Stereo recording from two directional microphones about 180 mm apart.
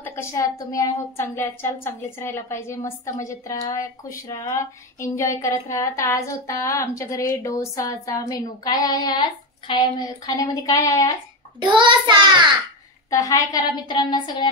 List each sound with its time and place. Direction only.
0.0 s speech: 15° left (ahead or behind)
11.6 s child singing: 25° right (ahead or behind)
13.1 s speech: 20° left (ahead or behind)